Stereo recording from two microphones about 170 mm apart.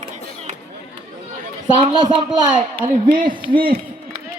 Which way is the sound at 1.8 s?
30° right (ahead or behind).